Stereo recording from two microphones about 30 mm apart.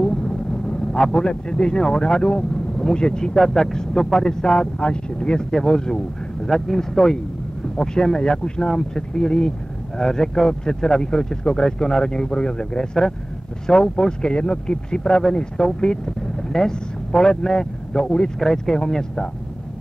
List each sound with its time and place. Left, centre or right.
0.2 s vehicle: left
1.5 s speech: left
3.3 s speech: centre; by 5.5 s left
5.5 s speech: centre
7.7 s speech: left